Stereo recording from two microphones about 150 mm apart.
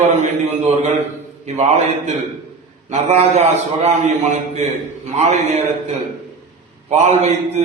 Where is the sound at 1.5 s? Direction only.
50° right (ahead or behind).